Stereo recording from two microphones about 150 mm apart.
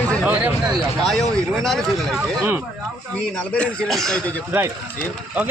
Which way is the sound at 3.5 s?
5° left (ahead or behind).